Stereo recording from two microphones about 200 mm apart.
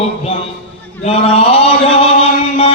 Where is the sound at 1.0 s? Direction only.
30° left (ahead or behind).